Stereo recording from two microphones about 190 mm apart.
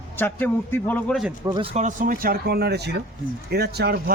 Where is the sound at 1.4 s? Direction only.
25° right (ahead or behind).